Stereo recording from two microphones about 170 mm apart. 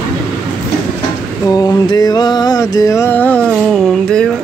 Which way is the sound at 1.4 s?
20° left (ahead or behind).